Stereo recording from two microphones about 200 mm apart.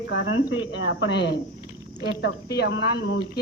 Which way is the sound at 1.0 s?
60° left (ahead or behind).